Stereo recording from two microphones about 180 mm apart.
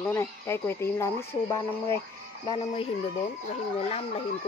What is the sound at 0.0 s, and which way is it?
Speech, 15° left (ahead or behind).